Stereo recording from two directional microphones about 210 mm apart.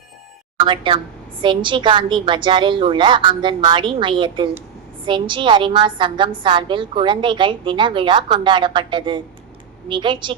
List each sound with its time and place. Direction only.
0.6 s a woman's voice: 20° right (ahead or behind)